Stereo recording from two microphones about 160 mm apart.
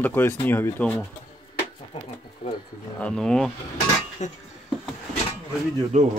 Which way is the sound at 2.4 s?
35° left (ahead or behind).